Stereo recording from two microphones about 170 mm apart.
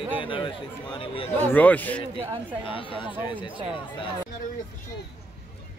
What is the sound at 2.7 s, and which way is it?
Speech, 30° left (ahead or behind).